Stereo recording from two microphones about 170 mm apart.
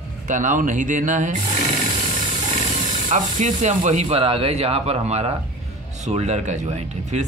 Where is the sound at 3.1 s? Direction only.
45° right (ahead or behind).